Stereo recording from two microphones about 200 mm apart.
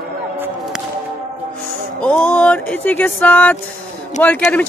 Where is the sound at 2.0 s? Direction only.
5° left (ahead or behind).